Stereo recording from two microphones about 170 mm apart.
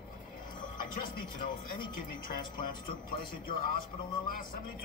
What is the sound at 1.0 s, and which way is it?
Speech, 50° left (ahead or behind).